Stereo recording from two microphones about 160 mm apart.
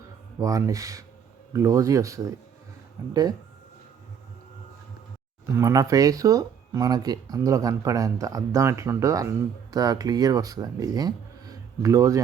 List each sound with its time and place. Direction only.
0.3 s speech: 20° right (ahead or behind)
5.5 s speech: 20° right (ahead or behind)